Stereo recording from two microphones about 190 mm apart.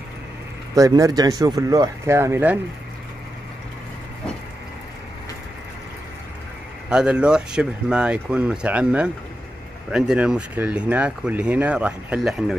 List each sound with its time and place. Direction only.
0.7 s speech: 15° right (ahead or behind)
6.9 s speech: 5° right (ahead or behind)